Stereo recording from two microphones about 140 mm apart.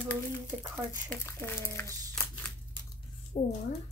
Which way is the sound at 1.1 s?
15° left (ahead or behind).